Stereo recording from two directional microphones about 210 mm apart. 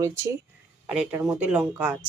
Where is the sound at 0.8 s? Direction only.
5° right (ahead or behind).